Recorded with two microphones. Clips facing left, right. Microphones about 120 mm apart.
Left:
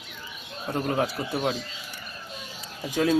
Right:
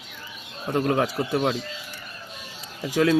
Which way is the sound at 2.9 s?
90° right.